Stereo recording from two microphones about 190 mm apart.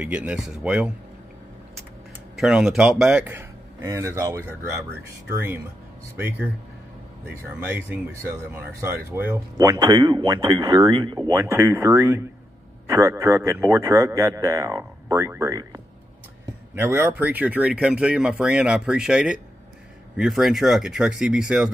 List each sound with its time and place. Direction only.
0.0 s speech: 5° right (ahead or behind)
2.4 s speech: 5° right (ahead or behind)